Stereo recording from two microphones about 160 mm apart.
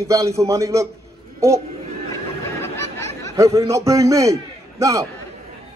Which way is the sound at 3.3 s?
20° right (ahead or behind).